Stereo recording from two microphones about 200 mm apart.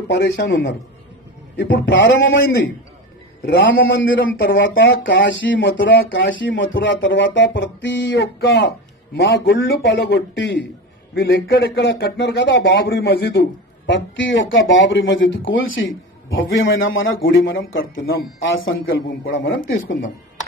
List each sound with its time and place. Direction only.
0.1 s speech: 60° left (ahead or behind)
3.4 s speech: 60° left (ahead or behind)
17.7 s speech: 60° left (ahead or behind); by 19.0 s 75° left (ahead or behind)